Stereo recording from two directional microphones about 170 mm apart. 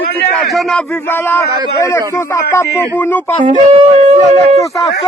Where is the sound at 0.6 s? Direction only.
10° left (ahead or behind).